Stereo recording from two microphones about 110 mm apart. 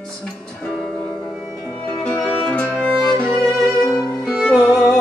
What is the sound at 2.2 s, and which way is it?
Music, 10° left (ahead or behind).